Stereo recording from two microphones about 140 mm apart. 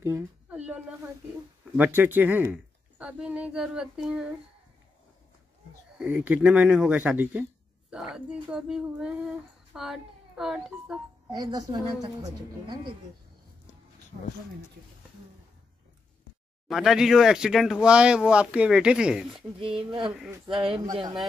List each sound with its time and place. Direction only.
0.0 s cat: 15° right (ahead or behind)
1.8 s a woman's voice: 15° right (ahead or behind)
6.0 s speech: 10° right (ahead or behind)
11.3 s a woman's voice: 30° right (ahead or behind)
16.6 s speech: centre (ahead or behind)
19.8 s speech: 35° right (ahead or behind)